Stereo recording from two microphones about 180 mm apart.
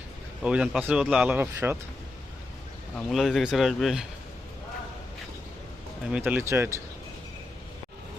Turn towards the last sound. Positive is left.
turn(degrees=-15)  # may be behind; listen again after turning